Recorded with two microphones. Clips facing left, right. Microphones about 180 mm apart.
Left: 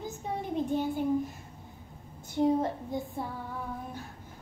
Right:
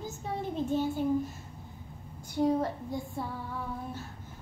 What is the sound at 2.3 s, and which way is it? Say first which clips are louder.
Speech: left 1 dB; 20° left (ahead or behind).